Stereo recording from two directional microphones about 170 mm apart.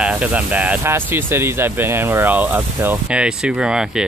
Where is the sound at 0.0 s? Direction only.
5° right (ahead or behind).